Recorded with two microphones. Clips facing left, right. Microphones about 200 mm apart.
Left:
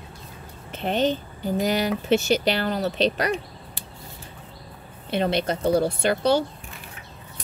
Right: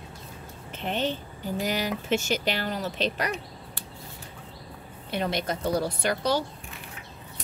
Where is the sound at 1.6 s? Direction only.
35° left (ahead or behind).